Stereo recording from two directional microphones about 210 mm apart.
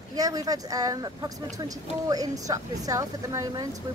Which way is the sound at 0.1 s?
15° right (ahead or behind).